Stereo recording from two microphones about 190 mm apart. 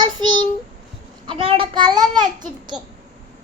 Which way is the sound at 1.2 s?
25° right (ahead or behind).